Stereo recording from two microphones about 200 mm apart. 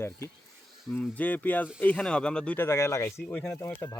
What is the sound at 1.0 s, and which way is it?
Speech, 5° left (ahead or behind).